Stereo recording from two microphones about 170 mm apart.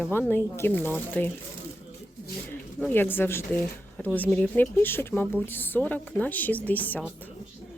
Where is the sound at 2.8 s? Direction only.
10° left (ahead or behind).